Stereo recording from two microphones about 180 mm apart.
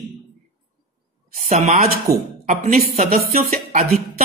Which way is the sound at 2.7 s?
35° right (ahead or behind).